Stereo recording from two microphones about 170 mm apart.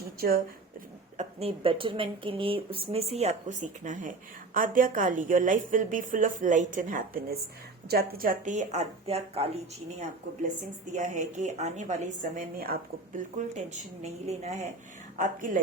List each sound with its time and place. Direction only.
0.2 s speech: 60° right (ahead or behind)
1.1 s a woman's voice: 40° right (ahead or behind)
10.9 s a woman's voice: 45° right (ahead or behind)
12.4 s speech: 60° right (ahead or behind)
13.5 s a woman's voice: 40° right (ahead or behind)
15.2 s a woman's voice: 50° right (ahead or behind)